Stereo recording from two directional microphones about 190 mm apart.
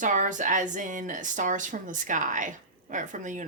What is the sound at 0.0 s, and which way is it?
Speech, 40° right (ahead or behind).